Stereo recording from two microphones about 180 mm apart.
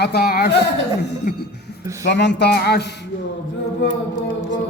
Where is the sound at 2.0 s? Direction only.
75° left (ahead or behind).